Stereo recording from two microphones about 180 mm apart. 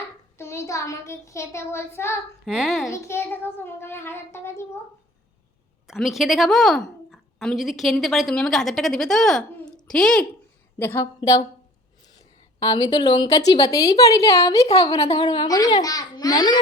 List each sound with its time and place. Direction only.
0.3 s child singing: 15° left (ahead or behind)
2.5 s a woman's voice: centre (ahead or behind)
3.0 s child singing: 15° left (ahead or behind)
5.9 s a woman's voice: centre (ahead or behind)
10.8 s child singing: 15° left (ahead or behind)
12.5 s a woman's voice: 20° left (ahead or behind)